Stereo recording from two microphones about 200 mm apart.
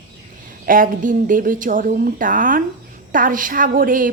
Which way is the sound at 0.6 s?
45° right (ahead or behind).